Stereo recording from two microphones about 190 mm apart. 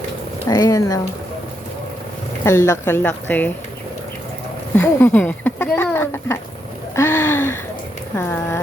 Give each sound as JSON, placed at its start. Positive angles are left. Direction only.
{"t": 0.4, "sound": "speech", "side_deg": 20}
{"t": 2.4, "sound": "speech", "side_deg": 15}
{"t": 4.7, "sound": "speech", "side_deg": 10}
{"t": 6.9, "sound": "a sound", "side_deg": 10}
{"t": 8.1, "sound": "speech", "side_deg": 10}